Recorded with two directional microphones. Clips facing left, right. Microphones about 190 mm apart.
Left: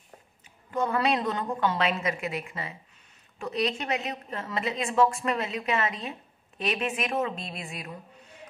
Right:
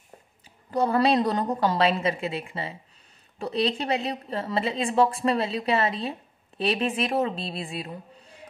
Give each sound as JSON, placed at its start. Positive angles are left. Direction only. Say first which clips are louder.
{"t": 0.7, "sound": "speech", "louder": "right 4 dB", "side_deg": -35}